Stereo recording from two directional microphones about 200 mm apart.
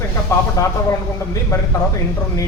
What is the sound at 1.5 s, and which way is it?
Speech, 15° left (ahead or behind).